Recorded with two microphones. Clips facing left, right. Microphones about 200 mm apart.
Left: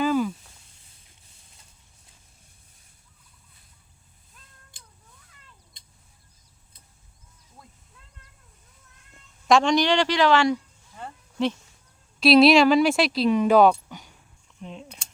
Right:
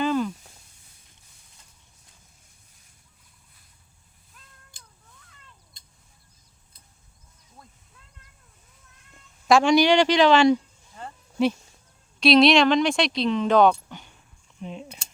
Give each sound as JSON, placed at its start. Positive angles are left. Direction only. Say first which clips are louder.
{"t": 0.0, "sound": "a sound", "louder": "left 1 dB", "side_deg": 5}
{"t": 9.5, "sound": "a woman's voice", "louder": "right 2 dB", "side_deg": -5}
{"t": 11.4, "sound": "a woman's voice", "louder": "right 3 dB", "side_deg": -10}
{"t": 12.2, "sound": "speech", "louder": "left 1 dB", "side_deg": 5}